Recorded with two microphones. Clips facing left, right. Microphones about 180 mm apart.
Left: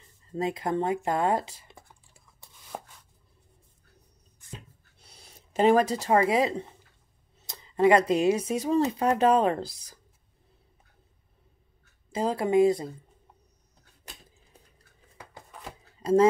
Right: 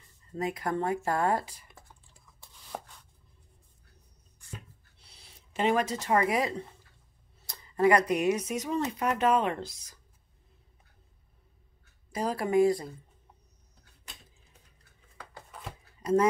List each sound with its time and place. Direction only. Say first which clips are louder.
0.3 s speech: left 3 dB; 25° left (ahead or behind)
2.7 s chopping: left 1 dB; 5° left (ahead or behind)
4.9 s speech: left 4 dB; 45° left (ahead or behind)
12.1 s speech: left 3 dB; 25° left (ahead or behind)
16.0 s speech: left 4 dB; 30° left (ahead or behind)